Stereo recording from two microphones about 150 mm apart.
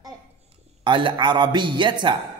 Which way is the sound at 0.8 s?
30° right (ahead or behind).